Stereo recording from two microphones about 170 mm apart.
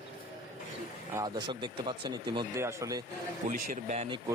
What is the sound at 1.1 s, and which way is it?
Speech, 25° right (ahead or behind).